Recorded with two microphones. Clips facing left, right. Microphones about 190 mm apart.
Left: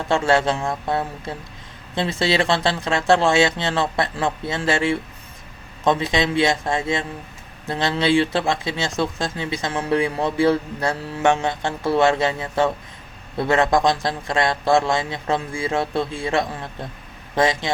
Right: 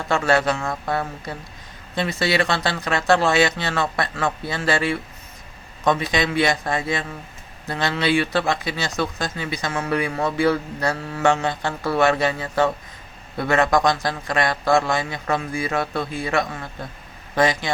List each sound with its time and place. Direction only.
0.1 s speech: 25° left (ahead or behind)